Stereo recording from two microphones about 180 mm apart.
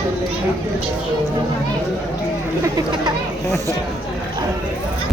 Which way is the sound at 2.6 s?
20° right (ahead or behind).